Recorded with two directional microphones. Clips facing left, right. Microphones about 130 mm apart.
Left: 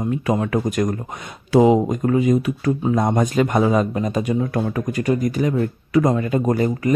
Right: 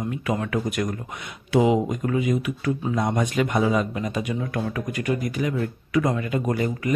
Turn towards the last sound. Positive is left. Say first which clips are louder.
# left 5 dB
turn(degrees=40)  # may be behind; listen again after turning